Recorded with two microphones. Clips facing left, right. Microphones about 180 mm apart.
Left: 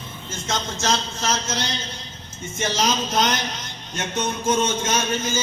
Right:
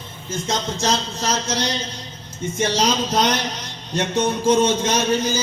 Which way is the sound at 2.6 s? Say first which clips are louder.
Right 3 dB; 35° right (ahead or behind).